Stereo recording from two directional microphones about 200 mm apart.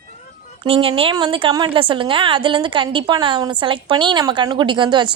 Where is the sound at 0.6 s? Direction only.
25° right (ahead or behind).